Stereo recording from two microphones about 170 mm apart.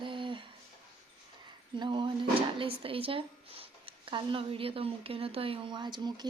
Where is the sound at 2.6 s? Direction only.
35° right (ahead or behind).